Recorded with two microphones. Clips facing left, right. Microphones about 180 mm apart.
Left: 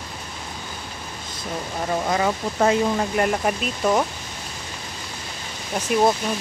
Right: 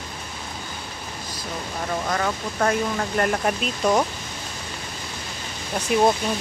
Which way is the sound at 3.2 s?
5° left (ahead or behind).